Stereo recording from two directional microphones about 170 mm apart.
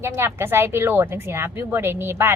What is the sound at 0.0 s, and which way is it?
A woman's voice, 15° right (ahead or behind).